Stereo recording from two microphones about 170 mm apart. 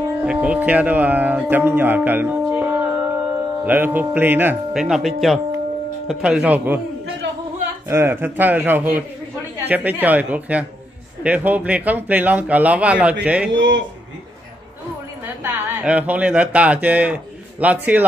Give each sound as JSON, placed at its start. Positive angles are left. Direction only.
{"t": 0.3, "sound": "speech", "side_deg": -10}
{"t": 7.9, "sound": "speech", "side_deg": -15}
{"t": 13.5, "sound": "speech", "side_deg": -90}
{"t": 15.2, "sound": "speech", "side_deg": -15}